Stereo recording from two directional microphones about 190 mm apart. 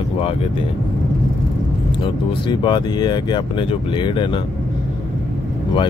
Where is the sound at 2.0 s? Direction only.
25° left (ahead or behind).